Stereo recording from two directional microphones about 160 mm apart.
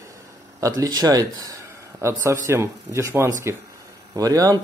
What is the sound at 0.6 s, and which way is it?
A man's voice, 20° right (ahead or behind).